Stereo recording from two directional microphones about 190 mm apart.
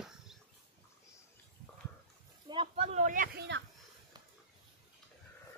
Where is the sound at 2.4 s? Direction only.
30° right (ahead or behind); by 3.5 s 45° right (ahead or behind).